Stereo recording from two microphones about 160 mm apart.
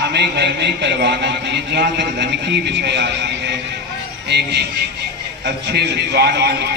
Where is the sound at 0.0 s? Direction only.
90° right.